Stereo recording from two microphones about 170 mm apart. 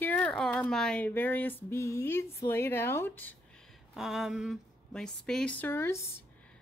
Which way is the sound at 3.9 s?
Centre (ahead or behind).